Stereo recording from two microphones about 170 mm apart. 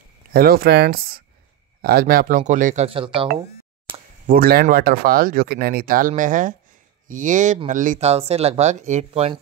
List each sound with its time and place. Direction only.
0.3 s speech: 60° right (ahead or behind); by 3.3 s 30° right (ahead or behind)
4.3 s speech: 65° right (ahead or behind); by 9.4 s 35° right (ahead or behind)